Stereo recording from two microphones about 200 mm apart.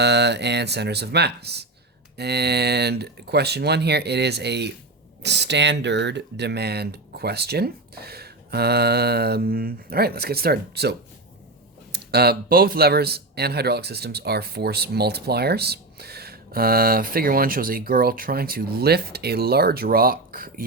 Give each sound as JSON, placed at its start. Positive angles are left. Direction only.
{"t": 0.0, "sound": "a man's voice", "side_deg": -60}